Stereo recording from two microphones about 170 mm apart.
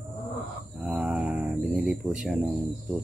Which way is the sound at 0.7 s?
5° right (ahead or behind).